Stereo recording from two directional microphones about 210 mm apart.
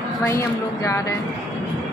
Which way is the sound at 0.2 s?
15° left (ahead or behind).